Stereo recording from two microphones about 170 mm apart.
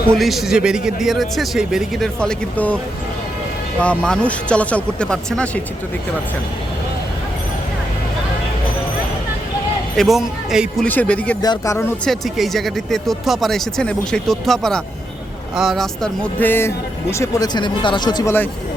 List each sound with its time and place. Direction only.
0.1 s speech: centre (ahead or behind)
3.8 s speech: 5° left (ahead or behind)
10.0 s speech: centre (ahead or behind)
10.8 s speech: 10° left (ahead or behind)
12.0 s speech: centre (ahead or behind); by 18.3 s 25° left (ahead or behind)